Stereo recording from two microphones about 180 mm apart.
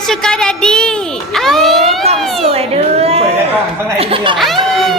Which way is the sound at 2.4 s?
35° right (ahead or behind).